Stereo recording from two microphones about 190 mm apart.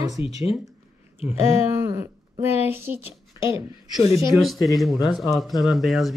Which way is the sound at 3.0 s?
30° left (ahead or behind).